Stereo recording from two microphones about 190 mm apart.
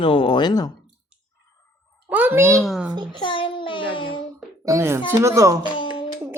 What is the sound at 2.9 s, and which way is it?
Speech, 25° right (ahead or behind).